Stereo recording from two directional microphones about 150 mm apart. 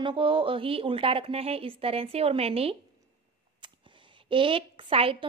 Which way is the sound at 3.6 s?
30° right (ahead or behind).